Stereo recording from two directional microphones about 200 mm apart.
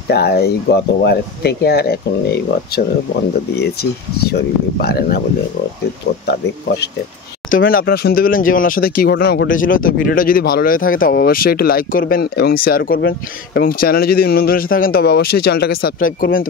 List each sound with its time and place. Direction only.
0.1 s speech: 55° left (ahead or behind)
4.3 s speech: 50° left (ahead or behind)
7.5 s speech: 45° left (ahead or behind)